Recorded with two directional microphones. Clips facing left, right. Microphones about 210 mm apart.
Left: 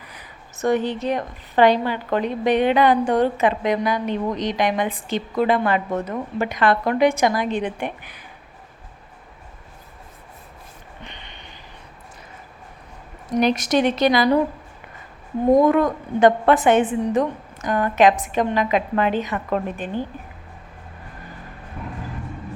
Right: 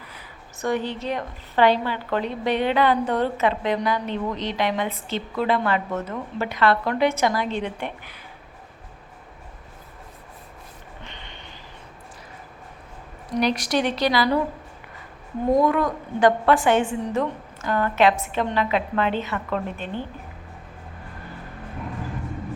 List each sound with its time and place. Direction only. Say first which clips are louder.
0.7 s a woman's voice: left 4 dB; 15° left (ahead or behind)
11.0 s a sound: left 2 dB; 15° left (ahead or behind)
13.4 s speech: left 4 dB; 20° left (ahead or behind)
15.5 s a woman's voice: left 4 dB; 20° left (ahead or behind)